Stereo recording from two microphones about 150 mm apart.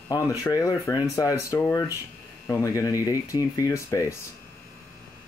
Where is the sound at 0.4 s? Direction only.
25° left (ahead or behind).